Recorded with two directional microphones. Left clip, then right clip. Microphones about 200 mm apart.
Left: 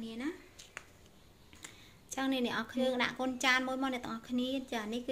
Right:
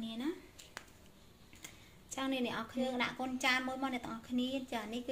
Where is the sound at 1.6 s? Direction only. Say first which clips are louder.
Left 3 dB; 20° left (ahead or behind).